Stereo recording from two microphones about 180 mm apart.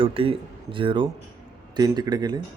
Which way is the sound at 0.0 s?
30° right (ahead or behind).